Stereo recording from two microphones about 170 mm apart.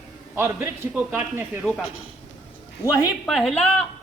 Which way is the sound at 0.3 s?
15° right (ahead or behind).